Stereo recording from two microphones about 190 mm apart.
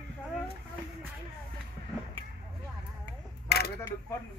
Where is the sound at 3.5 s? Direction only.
55° left (ahead or behind).